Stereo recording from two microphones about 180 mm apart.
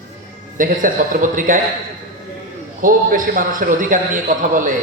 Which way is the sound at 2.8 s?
50° right (ahead or behind).